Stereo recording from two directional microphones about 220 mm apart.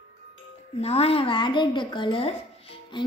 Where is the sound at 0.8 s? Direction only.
25° left (ahead or behind).